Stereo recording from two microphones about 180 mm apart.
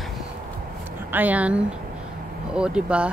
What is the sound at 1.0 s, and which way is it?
Speech, 10° right (ahead or behind).